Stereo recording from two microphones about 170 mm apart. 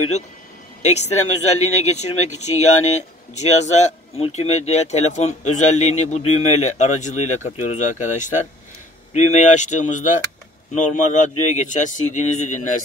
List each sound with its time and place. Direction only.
0.8 s speech: 40° left (ahead or behind)